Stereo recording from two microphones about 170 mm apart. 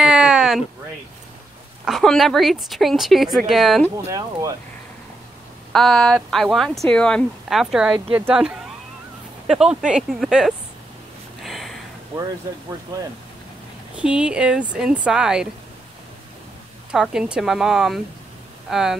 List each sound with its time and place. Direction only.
0.0 s a sound: 5° right (ahead or behind)
1.9 s speech: centre (ahead or behind)
3.9 s speech: 20° right (ahead or behind)
5.7 s speech: 5° left (ahead or behind)
11.4 s a sound: centre (ahead or behind)
12.9 s speech: 20° right (ahead or behind)
13.9 s speech: 5° right (ahead or behind)
16.9 s speech: 5° right (ahead or behind)